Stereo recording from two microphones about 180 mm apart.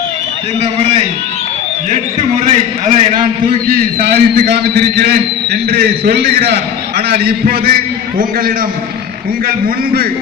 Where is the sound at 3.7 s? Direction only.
55° right (ahead or behind).